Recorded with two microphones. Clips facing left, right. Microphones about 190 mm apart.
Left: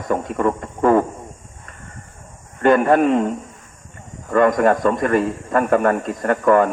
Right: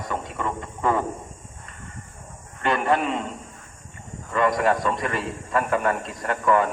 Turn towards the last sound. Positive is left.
turn(degrees=50)  # may be behind; listen again after turning